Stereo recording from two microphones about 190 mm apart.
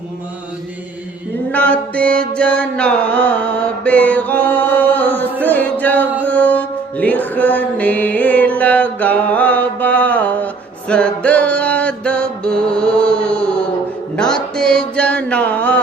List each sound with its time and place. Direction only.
1.5 s mantra: 5° left (ahead or behind)
6.2 s music: 10° left (ahead or behind)